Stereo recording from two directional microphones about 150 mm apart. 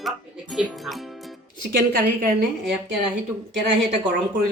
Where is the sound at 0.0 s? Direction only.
Centre (ahead or behind).